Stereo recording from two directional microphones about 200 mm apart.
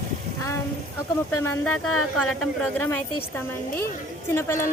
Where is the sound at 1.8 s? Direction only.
90° left.